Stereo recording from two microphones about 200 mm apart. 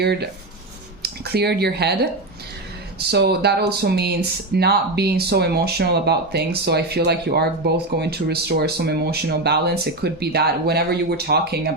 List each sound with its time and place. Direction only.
0.0 s speech: 55° right (ahead or behind)
3.1 s speech: 55° right (ahead or behind)